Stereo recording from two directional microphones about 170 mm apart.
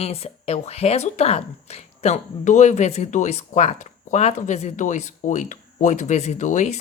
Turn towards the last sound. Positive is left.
turn(degrees=45)  # may be behind; listen again after turning